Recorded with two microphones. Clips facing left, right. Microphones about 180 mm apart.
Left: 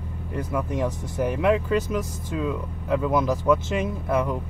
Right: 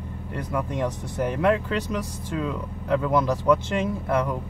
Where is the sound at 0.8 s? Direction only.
10° left (ahead or behind).